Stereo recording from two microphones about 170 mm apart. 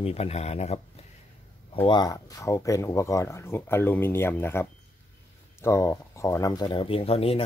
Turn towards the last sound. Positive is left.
turn(degrees=35)  # may be behind; listen again after turning